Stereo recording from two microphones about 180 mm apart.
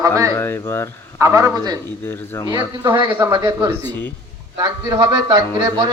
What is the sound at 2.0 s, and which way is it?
Speech, 15° left (ahead or behind).